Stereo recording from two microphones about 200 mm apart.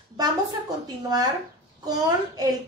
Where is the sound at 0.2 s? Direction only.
20° right (ahead or behind).